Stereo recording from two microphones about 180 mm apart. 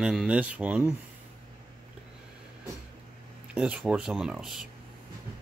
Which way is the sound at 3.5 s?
5° right (ahead or behind).